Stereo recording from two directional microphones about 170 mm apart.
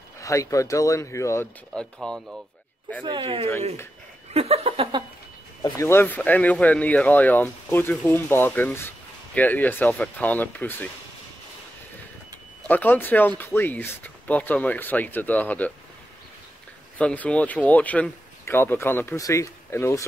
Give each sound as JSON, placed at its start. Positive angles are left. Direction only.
{"t": 0.2, "sound": "speech", "side_deg": 20}
{"t": 1.7, "sound": "speech", "side_deg": 0}
{"t": 3.0, "sound": "speech", "side_deg": -30}
{"t": 4.3, "sound": "a sound", "side_deg": -35}
{"t": 5.6, "sound": "speech", "side_deg": 15}
{"t": 12.6, "sound": "speech", "side_deg": 10}
{"t": 17.0, "sound": "speech", "side_deg": 10}